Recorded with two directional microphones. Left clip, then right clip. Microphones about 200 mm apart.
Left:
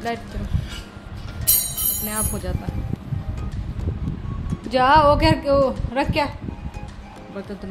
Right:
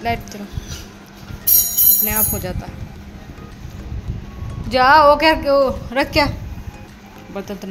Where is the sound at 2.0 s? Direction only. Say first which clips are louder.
Right 5 dB; 10° right (ahead or behind).